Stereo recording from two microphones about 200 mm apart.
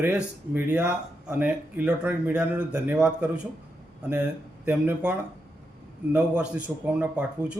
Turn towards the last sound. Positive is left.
turn(degrees=-5)  # may be behind; listen again after turning